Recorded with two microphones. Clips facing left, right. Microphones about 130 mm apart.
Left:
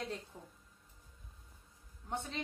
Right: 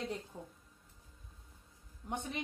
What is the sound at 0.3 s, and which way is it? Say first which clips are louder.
Speech: right 5 dB; 20° right (ahead or behind).